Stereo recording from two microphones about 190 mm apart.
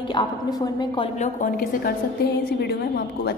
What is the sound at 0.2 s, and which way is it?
Speech, 25° left (ahead or behind).